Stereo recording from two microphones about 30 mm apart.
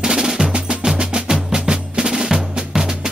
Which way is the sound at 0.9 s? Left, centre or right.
Right.